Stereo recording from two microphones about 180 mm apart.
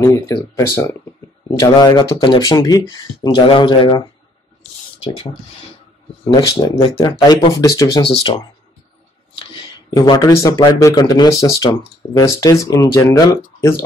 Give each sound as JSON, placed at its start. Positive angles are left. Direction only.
{"t": 0.0, "sound": "speech", "side_deg": 20}
{"t": 5.0, "sound": "speech", "side_deg": 30}
{"t": 8.0, "sound": "speech", "side_deg": 30}
{"t": 9.9, "sound": "speech", "side_deg": 20}